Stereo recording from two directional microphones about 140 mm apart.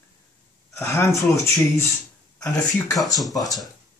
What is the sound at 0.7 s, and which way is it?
Speech, 20° left (ahead or behind).